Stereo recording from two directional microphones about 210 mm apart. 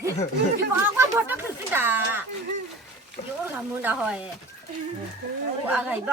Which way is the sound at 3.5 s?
5° right (ahead or behind).